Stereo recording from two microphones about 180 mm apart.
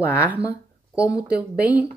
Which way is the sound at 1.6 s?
10° right (ahead or behind).